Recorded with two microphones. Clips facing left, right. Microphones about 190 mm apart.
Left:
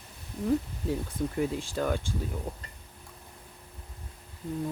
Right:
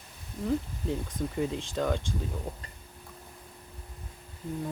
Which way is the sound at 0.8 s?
5° left (ahead or behind).